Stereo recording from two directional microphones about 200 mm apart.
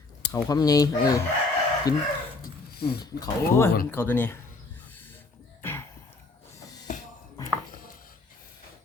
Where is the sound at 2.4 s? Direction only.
55° left (ahead or behind).